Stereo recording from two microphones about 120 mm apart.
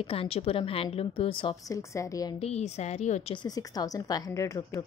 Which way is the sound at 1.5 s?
30° left (ahead or behind).